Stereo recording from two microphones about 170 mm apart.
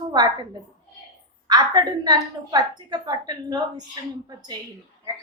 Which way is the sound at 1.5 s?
25° right (ahead or behind).